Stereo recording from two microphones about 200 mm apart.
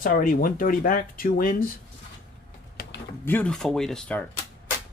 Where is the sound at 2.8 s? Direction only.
45° left (ahead or behind).